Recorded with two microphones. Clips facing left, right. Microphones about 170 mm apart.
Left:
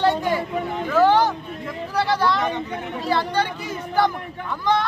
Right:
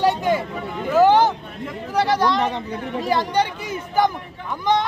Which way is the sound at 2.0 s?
20° right (ahead or behind).